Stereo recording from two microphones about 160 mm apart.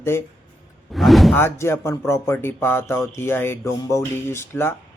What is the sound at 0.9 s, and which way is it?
Speech, centre (ahead or behind).